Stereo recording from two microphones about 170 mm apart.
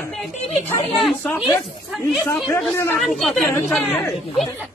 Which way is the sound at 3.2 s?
Centre (ahead or behind).